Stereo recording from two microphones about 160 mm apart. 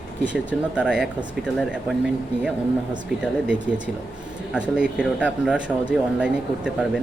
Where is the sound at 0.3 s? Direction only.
5° right (ahead or behind).